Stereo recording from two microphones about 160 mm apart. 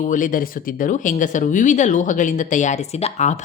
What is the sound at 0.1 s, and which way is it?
A woman's voice, 55° left (ahead or behind).